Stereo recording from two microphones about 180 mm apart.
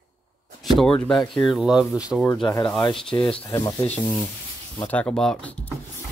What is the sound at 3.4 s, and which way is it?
Speech, 20° left (ahead or behind).